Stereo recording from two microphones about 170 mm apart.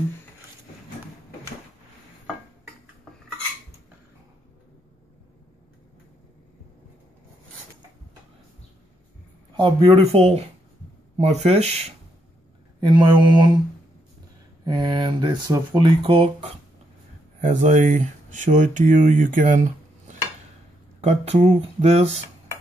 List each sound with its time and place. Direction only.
9.6 s speech: 35° right (ahead or behind)
12.8 s speech: 25° right (ahead or behind)
14.6 s speech: 25° right (ahead or behind)
17.4 s speech: 45° right (ahead or behind)